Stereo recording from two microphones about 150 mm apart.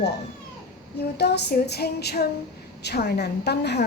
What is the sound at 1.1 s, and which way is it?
A woman's voice, 90° left.